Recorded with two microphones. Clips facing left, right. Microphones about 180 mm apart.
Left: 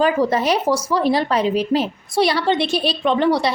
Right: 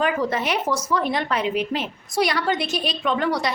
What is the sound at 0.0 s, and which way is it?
A woman's voice, 35° left (ahead or behind).